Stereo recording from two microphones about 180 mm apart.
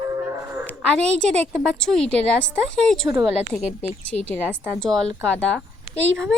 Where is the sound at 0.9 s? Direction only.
5° left (ahead or behind).